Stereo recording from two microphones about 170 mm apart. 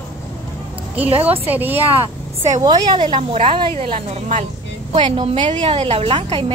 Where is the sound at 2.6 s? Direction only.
25° right (ahead or behind).